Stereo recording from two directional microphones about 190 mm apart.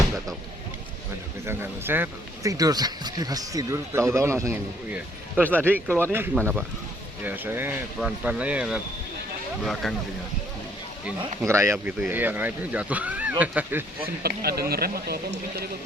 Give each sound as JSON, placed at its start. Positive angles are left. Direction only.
{"t": 1.5, "sound": "speech", "side_deg": -10}
{"t": 9.8, "sound": "speech", "side_deg": 0}
{"t": 11.0, "sound": "speech", "side_deg": -15}
{"t": 14.2, "sound": "speech", "side_deg": -55}